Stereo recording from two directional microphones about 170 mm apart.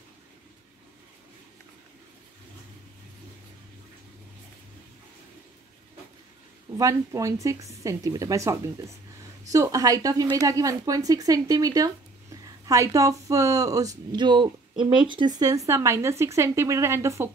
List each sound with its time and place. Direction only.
6.8 s speech: 20° right (ahead or behind)